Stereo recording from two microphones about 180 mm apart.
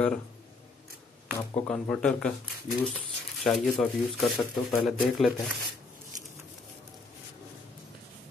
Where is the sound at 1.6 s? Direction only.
5° left (ahead or behind).